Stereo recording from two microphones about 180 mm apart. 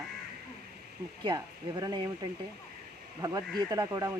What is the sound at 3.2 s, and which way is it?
Speech, 20° right (ahead or behind).